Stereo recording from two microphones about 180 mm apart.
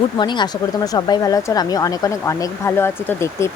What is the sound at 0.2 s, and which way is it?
Speech, 25° left (ahead or behind).